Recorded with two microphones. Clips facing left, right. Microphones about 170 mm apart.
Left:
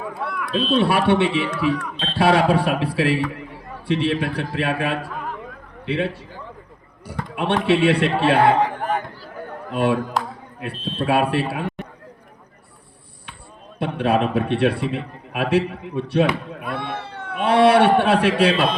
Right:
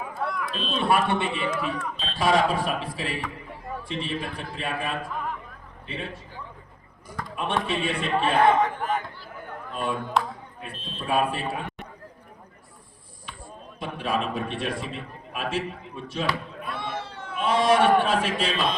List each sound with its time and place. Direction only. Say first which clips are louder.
0.1 s speech: left 2 dB; 60° left (ahead or behind)
0.8 s a man's voice: left 4 dB; 75° left (ahead or behind)
7.3 s a man's voice: left 9 dB; 75° left (ahead or behind)
8.5 s a sound: left 3 dB; 35° left (ahead or behind)
9.7 s a man's voice: left 6 dB; 75° left (ahead or behind)
13.7 s a man's voice: left 8 dB; 65° left (ahead or behind)
16.6 s cat: left 4 dB; 60° left (ahead or behind)